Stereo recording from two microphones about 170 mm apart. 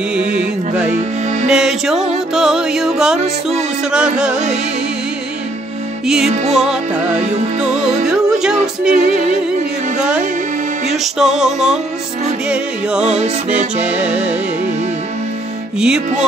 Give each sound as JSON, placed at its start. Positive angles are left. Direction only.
{"t": 0.1, "sound": "music", "side_deg": -5}
{"t": 6.0, "sound": "music", "side_deg": -5}
{"t": 13.0, "sound": "music", "side_deg": -40}
{"t": 13.7, "sound": "music", "side_deg": -10}